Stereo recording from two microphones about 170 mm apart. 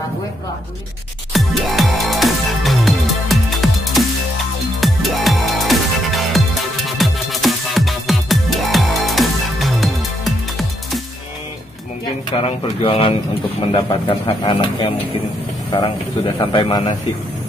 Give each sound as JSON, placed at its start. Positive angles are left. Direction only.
{"t": 1.3, "sound": "music", "side_deg": 0}
{"t": 12.4, "sound": "speech", "side_deg": 35}